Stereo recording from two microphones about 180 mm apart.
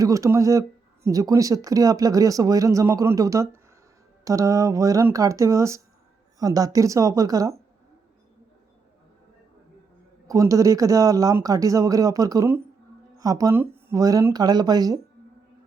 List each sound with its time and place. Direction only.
0.0 s speech: 15° right (ahead or behind)
10.2 s speech: 20° right (ahead or behind)